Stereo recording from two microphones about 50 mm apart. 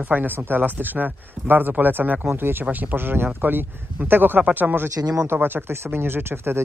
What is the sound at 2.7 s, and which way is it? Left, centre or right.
Speech, right.